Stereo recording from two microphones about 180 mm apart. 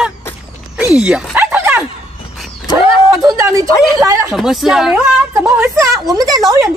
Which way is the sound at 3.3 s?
15° right (ahead or behind).